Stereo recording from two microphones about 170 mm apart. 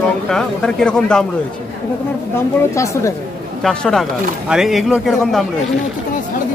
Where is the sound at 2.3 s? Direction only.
15° left (ahead or behind).